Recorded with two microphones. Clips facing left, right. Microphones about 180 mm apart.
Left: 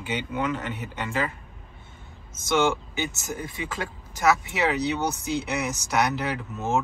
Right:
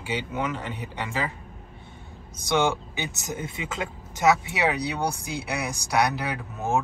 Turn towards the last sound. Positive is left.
turn(degrees=-10)  # may be behind; listen again after turning